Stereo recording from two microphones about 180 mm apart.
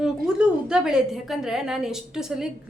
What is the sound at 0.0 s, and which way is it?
A woman's voice, 5° right (ahead or behind).